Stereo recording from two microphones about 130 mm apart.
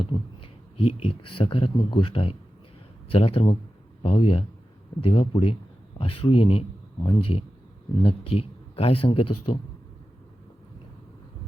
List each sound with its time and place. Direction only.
0.0 s speech: 45° left (ahead or behind)